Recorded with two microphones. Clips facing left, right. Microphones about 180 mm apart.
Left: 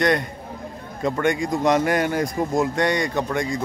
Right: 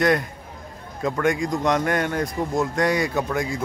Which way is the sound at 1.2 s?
Centre (ahead or behind).